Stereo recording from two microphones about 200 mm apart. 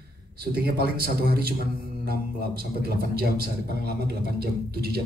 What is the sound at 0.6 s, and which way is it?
A man's voice, 50° right (ahead or behind).